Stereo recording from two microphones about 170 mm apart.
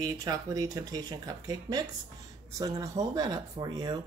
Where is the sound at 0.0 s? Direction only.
20° right (ahead or behind).